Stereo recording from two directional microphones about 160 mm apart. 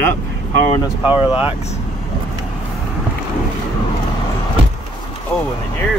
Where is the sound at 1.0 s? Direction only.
35° left (ahead or behind).